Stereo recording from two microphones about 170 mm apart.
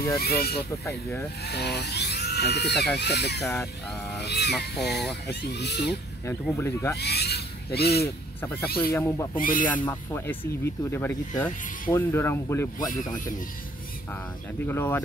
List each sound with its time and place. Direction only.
0.2 s speech: 65° left (ahead or behind)
0.6 s speech: 15° left (ahead or behind)
1.4 s speech: 75° left (ahead or behind)
6.5 s speech: 15° left (ahead or behind)
7.0 s rub: 70° left (ahead or behind)
8.4 s speech: 10° left (ahead or behind)
8.6 s speech: 65° left (ahead or behind)
8.9 s speech: 15° left (ahead or behind)
9.4 s speech: 55° left (ahead or behind)
9.8 s speech: 15° left (ahead or behind)
14.7 s speech: 15° left (ahead or behind)